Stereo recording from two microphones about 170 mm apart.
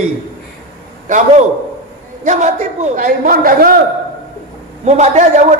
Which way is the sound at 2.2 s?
45° right (ahead or behind).